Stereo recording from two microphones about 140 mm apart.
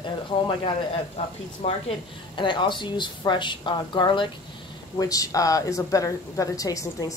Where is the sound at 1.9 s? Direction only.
35° left (ahead or behind).